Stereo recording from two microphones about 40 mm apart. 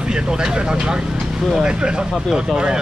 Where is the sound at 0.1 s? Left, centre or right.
Centre.